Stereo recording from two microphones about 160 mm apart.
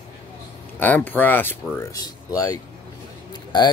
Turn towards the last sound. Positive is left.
turn(degrees=25)  # may be behind; listen again after turning